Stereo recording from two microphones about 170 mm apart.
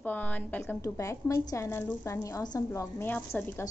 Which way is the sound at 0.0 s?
10° left (ahead or behind).